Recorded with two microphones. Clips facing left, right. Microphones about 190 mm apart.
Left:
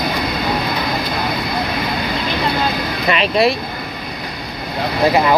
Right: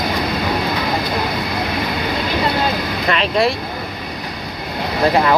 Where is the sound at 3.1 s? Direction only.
15° left (ahead or behind).